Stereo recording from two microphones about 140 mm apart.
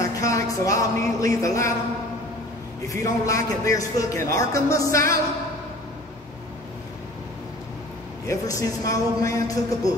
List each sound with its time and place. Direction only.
0.0 s speech: 25° left (ahead or behind)
2.9 s a man's voice: 25° left (ahead or behind)
8.3 s a man's voice: 25° left (ahead or behind)